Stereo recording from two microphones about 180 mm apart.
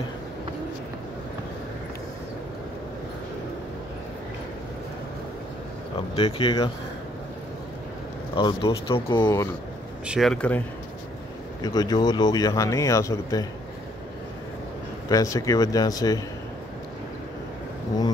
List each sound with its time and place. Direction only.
5.9 s speech: 30° left (ahead or behind)
8.4 s speech: 25° left (ahead or behind)
10.0 s speech: centre (ahead or behind)
11.6 s speech: 20° left (ahead or behind)
15.0 s speech: 20° left (ahead or behind)